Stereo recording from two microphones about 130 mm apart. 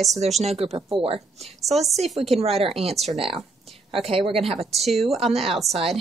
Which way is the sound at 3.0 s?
45° right (ahead or behind).